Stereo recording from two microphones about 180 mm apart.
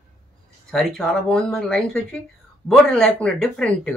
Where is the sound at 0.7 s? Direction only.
5° left (ahead or behind).